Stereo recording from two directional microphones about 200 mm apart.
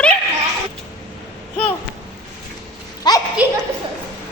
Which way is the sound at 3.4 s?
10° right (ahead or behind).